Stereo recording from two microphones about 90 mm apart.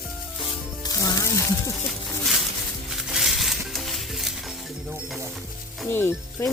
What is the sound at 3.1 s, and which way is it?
Stir, 5° right (ahead or behind).